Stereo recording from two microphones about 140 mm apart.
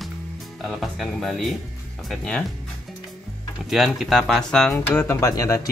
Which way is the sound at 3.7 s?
Centre (ahead or behind).